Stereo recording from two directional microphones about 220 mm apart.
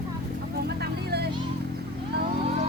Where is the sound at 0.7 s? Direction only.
50° right (ahead or behind).